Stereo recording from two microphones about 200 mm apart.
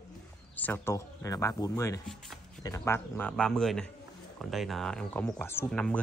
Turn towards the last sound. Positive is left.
turn(degrees=5)  # may be behind; listen again after turning